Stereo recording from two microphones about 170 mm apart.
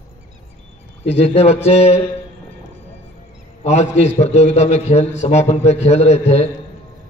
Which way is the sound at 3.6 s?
40° left (ahead or behind).